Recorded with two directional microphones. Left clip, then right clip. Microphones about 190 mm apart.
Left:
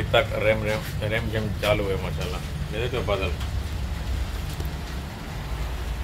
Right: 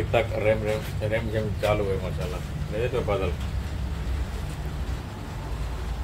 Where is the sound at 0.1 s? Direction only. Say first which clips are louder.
Left 2 dB; 5° left (ahead or behind).